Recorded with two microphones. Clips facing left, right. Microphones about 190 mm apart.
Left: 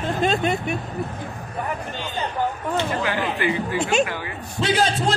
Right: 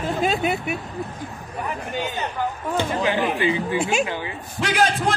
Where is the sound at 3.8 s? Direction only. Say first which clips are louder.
Left 6 dB; centre (ahead or behind).